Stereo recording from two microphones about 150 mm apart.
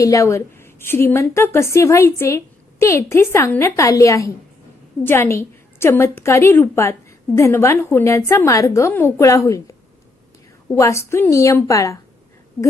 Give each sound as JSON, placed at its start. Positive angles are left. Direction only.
{"t": 0.0, "sound": "a woman's voice", "side_deg": 20}